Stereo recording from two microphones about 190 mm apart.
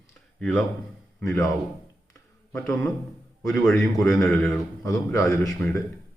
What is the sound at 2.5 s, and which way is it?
Speech, 5° left (ahead or behind).